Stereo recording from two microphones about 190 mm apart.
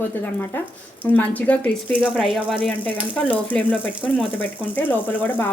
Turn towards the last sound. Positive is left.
turn(degrees=10)  # may be behind; listen again after turning